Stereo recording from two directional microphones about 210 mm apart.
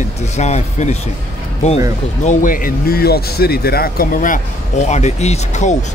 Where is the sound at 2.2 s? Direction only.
40° left (ahead or behind).